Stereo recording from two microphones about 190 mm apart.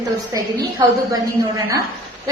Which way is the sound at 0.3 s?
20° right (ahead or behind).